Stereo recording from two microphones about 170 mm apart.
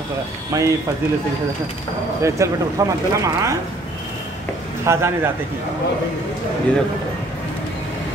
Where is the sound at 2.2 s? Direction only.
15° right (ahead or behind).